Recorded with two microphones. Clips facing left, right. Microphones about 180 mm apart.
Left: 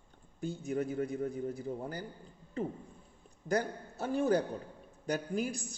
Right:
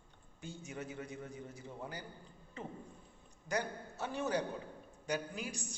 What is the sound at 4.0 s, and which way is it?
Speech, 40° left (ahead or behind).